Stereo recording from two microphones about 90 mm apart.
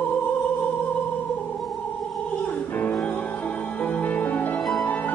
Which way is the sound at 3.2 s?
15° left (ahead or behind).